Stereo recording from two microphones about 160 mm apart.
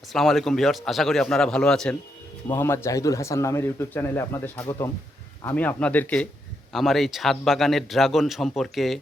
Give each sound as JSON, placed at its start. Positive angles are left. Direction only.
{"t": 0.1, "sound": "a man's voice", "side_deg": 0}
{"t": 2.5, "sound": "a man's voice", "side_deg": 15}